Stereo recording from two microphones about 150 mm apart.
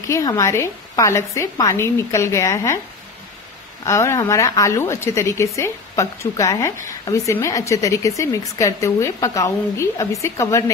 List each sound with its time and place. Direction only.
0.1 s a woman's voice: 20° left (ahead or behind)
3.8 s a woman's voice: 20° left (ahead or behind)